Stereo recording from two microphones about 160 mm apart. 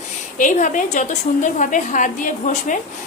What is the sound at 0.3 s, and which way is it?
A woman's voice, 55° left (ahead or behind).